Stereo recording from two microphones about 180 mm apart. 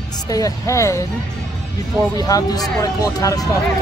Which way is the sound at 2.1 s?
20° left (ahead or behind).